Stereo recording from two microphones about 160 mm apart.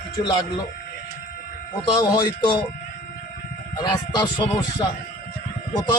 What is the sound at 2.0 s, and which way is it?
Speech, 25° left (ahead or behind).